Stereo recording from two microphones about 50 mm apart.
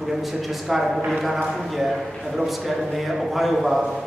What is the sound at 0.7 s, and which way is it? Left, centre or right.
Speech, centre.